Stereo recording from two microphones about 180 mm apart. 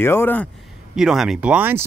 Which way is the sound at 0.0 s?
15° left (ahead or behind).